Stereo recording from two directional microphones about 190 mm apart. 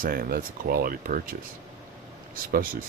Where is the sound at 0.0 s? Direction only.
50° right (ahead or behind).